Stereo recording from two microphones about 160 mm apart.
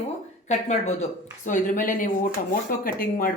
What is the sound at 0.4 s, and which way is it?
Speech, 45° left (ahead or behind).